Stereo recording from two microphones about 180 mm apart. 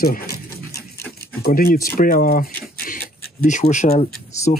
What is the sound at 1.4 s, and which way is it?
Speech, 55° left (ahead or behind).